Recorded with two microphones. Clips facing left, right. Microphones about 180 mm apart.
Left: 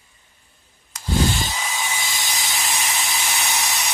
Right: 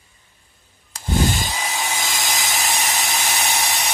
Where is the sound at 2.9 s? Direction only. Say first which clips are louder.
Right 3 dB; 40° right (ahead or behind).